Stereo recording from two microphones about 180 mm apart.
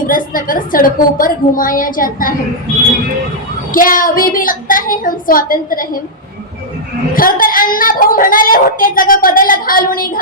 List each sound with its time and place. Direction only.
0.1 s a woman's voice: 50° left (ahead or behind)
3.7 s a woman's voice: 50° left (ahead or behind)
7.1 s a woman's voice: 50° left (ahead or behind)